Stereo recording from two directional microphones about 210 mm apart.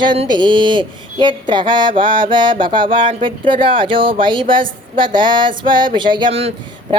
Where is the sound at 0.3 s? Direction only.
20° right (ahead or behind).